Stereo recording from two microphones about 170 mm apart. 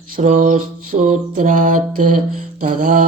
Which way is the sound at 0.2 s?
45° right (ahead or behind).